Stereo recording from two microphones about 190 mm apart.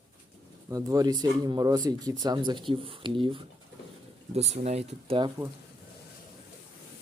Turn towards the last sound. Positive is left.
turn(degrees=-30)  # may be behind; listen again after turning